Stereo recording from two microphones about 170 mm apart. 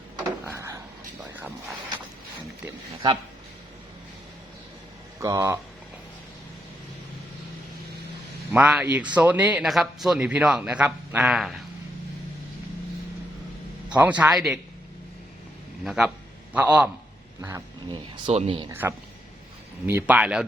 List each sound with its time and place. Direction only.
0.4 s a sound: 15° right (ahead or behind)
2.6 s speech: 25° right (ahead or behind)
5.2 s speech: 20° right (ahead or behind)
8.5 s speech: 10° right (ahead or behind)
13.9 s speech: 10° right (ahead or behind)
15.8 s a man's voice: centre (ahead or behind)
17.9 s speech: 30° right (ahead or behind)
18.7 s speech: 15° right (ahead or behind)